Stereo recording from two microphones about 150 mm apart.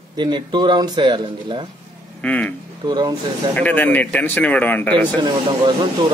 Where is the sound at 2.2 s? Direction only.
10° left (ahead or behind).